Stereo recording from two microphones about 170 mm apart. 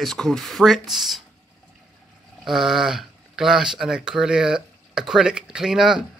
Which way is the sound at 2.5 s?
Centre (ahead or behind).